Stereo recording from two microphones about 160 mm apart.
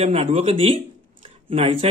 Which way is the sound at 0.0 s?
40° right (ahead or behind).